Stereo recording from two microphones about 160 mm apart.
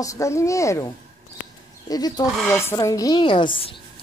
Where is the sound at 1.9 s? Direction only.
25° left (ahead or behind).